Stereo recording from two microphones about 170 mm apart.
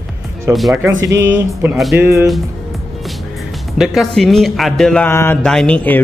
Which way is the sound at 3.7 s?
Centre (ahead or behind).